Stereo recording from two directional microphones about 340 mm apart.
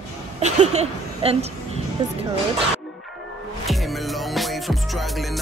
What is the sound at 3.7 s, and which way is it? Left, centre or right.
Music, centre.